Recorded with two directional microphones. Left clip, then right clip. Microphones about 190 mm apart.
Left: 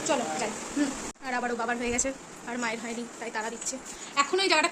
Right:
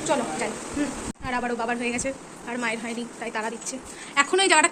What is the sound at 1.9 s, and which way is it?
Speech, 15° left (ahead or behind).